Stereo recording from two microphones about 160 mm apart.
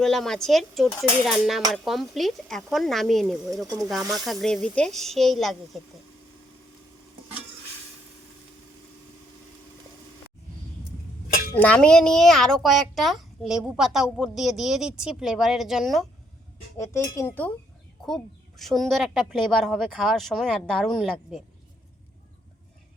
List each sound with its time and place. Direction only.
0.0 s a woman's voice: centre (ahead or behind)
11.5 s a woman's voice: 10° left (ahead or behind)
16.7 s speech: 20° left (ahead or behind)
18.0 s a woman's voice: centre (ahead or behind)